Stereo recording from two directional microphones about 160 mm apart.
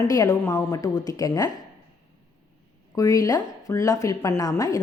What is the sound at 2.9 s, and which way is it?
A woman's voice, 20° left (ahead or behind).